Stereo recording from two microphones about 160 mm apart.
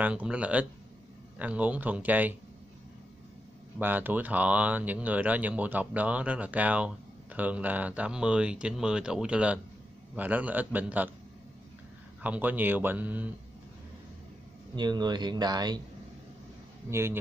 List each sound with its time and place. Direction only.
0.0 s speech: 10° right (ahead or behind)
3.7 s speech: 10° right (ahead or behind)
12.2 s speech: 10° right (ahead or behind)
14.8 s speech: 25° right (ahead or behind)
16.9 s speech: 15° right (ahead or behind)